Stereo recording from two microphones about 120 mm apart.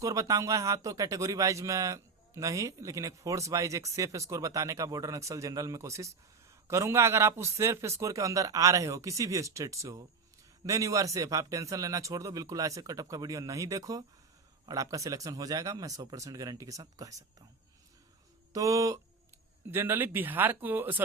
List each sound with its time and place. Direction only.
0.0 s a man's voice: 30° right (ahead or behind)
18.5 s a man's voice: 30° right (ahead or behind)
19.6 s speech: 15° right (ahead or behind)